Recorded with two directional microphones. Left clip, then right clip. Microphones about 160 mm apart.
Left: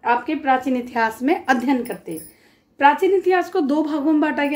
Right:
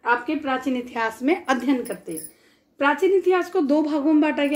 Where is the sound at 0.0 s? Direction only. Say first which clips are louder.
Left 3 dB; 30° left (ahead or behind).